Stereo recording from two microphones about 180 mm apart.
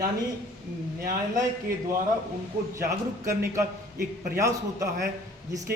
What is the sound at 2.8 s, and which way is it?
A man's voice, 15° right (ahead or behind).